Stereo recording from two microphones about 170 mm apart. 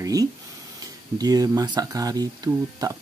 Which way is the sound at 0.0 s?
20° right (ahead or behind).